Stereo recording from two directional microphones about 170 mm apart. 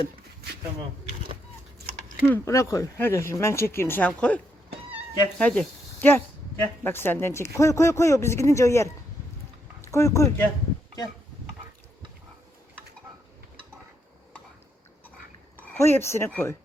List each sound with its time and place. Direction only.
2.2 s speech: 15° left (ahead or behind)
5.4 s speech: 5° left (ahead or behind)
15.5 s speech: 10° left (ahead or behind)